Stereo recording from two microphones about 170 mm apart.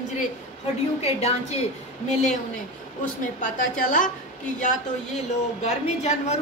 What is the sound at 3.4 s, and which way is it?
Speech, 50° left (ahead or behind).